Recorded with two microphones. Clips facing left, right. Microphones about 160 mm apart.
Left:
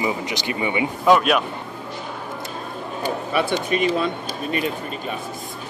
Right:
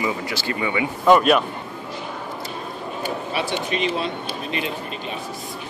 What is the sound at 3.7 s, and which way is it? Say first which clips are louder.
Speech: left 4 dB; 50° left (ahead or behind).